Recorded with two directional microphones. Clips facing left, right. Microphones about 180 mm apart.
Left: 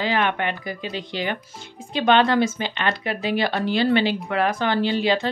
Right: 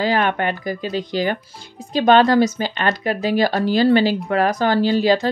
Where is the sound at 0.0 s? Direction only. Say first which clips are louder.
Right 4 dB; 40° right (ahead or behind).